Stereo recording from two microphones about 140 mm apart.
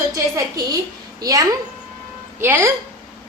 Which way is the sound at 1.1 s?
25° right (ahead or behind).